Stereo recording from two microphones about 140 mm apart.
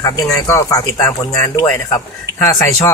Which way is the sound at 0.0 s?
25° left (ahead or behind).